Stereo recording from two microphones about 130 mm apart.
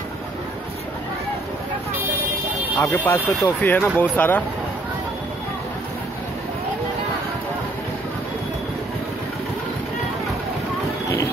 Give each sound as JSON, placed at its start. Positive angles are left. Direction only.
{"t": 2.8, "sound": "speech", "side_deg": 20}